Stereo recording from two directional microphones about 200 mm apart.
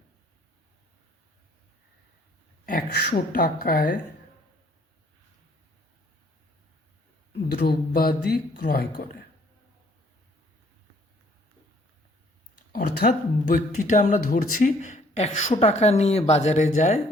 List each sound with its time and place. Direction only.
2.6 s speech: 50° left (ahead or behind)
7.4 s speech: 50° left (ahead or behind)
12.7 s speech: 45° left (ahead or behind)